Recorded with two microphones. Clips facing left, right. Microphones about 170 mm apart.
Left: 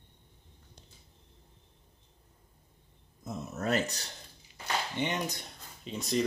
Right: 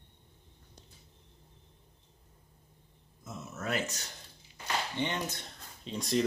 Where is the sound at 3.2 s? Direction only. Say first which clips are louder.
Left 5 dB; 35° left (ahead or behind).